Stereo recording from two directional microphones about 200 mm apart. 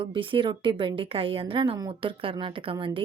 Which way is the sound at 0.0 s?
25° right (ahead or behind).